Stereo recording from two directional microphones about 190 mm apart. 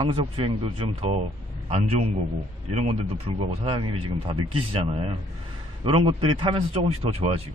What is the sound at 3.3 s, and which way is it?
Speech, 25° right (ahead or behind).